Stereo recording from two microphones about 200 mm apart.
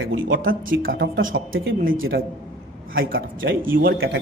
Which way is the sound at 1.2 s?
75° right (ahead or behind).